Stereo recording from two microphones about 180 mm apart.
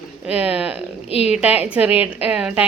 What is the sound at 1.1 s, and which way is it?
Speech, 35° left (ahead or behind).